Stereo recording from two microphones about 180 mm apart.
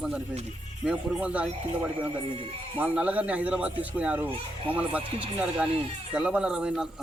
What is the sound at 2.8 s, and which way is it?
A man's voice, 10° right (ahead or behind).